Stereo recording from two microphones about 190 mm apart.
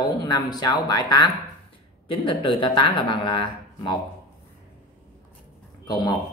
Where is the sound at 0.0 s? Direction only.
20° left (ahead or behind).